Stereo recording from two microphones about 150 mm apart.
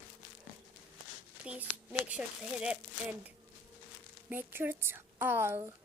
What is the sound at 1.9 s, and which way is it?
A woman's voice, 10° right (ahead or behind).